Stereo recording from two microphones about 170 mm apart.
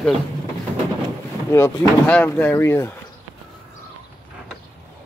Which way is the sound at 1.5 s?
10° left (ahead or behind).